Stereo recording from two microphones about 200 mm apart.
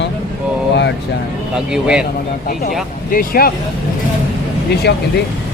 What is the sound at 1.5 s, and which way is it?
Speech, 5° right (ahead or behind).